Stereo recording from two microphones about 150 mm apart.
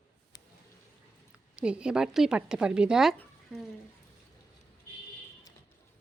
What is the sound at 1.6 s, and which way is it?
A woman's voice, 5° right (ahead or behind).